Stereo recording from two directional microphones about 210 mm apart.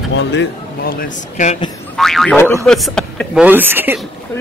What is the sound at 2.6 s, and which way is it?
Speech, centre (ahead or behind).